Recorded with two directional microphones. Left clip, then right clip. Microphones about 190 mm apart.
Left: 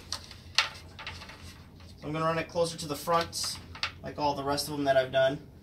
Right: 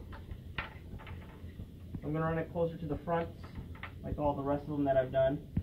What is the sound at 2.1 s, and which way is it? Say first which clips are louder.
Speech: left 5 dB; 20° left (ahead or behind).